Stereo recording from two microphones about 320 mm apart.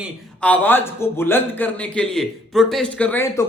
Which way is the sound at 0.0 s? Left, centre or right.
Centre.